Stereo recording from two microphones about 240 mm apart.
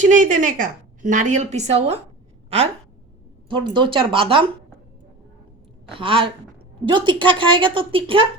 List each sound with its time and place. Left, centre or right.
0.0 s a woman's voice: right
3.5 s a woman's voice: centre
5.9 s a woman's voice: right